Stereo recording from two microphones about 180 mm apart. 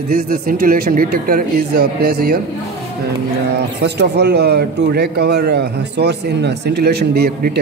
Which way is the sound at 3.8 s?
70° right (ahead or behind).